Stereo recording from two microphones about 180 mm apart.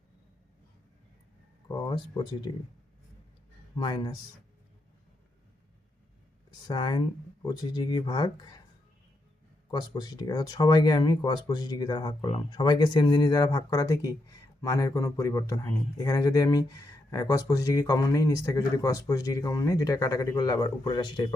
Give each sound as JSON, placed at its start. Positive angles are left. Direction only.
{"t": 1.6, "sound": "speech", "side_deg": 25}
{"t": 3.8, "sound": "a man's voice", "side_deg": 25}
{"t": 6.7, "sound": "a man's voice", "side_deg": 25}
{"t": 9.7, "sound": "a man's voice", "side_deg": 20}